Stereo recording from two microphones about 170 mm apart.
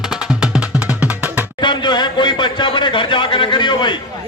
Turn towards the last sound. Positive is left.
turn(degrees=25)  # may be behind; listen again after turning